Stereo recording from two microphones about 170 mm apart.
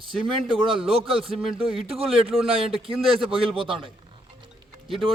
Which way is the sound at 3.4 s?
30° right (ahead or behind).